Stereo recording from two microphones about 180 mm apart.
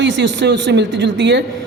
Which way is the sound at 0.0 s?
85° right.